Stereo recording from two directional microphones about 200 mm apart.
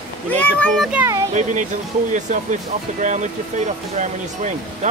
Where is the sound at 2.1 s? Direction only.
40° right (ahead or behind).